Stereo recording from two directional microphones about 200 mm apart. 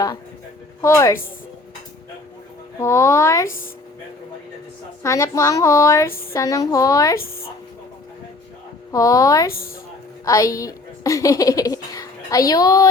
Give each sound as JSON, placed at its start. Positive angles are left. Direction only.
{"t": 0.8, "sound": "a woman's voice", "side_deg": 15}
{"t": 2.7, "sound": "a woman's voice", "side_deg": 15}
{"t": 5.0, "sound": "a woman's voice", "side_deg": 15}
{"t": 8.9, "sound": "a woman's voice", "side_deg": 15}